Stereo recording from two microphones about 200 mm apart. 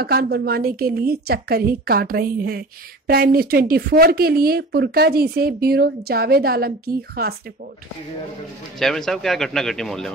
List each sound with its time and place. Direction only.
0.0 s speech: 50° right (ahead or behind)
8.7 s speech: centre (ahead or behind)